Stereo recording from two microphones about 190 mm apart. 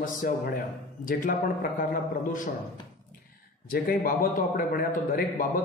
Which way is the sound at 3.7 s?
50° left (ahead or behind).